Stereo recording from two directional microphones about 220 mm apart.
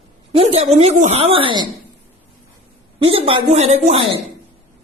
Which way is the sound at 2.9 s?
25° right (ahead or behind).